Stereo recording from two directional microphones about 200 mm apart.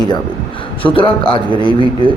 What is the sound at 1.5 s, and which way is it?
Speech, 25° right (ahead or behind).